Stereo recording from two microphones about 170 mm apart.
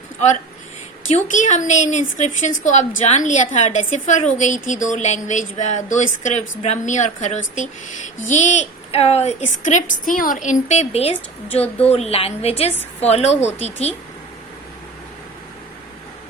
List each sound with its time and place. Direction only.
1.0 s a woman's voice: 45° left (ahead or behind)